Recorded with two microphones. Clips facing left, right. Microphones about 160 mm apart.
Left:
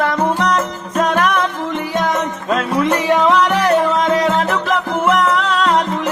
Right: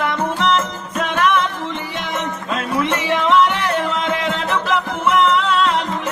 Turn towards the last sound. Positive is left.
turn(degrees=40)  # may be behind; listen again after turning